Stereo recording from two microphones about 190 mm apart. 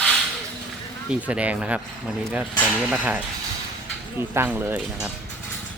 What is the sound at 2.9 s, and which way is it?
Speech, 10° right (ahead or behind).